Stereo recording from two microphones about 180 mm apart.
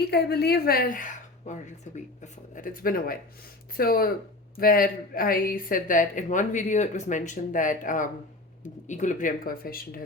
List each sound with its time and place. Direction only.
0.1 s speech: 65° left (ahead or behind)